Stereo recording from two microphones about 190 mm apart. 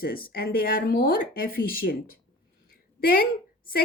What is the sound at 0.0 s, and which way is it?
A woman's voice, 50° left (ahead or behind).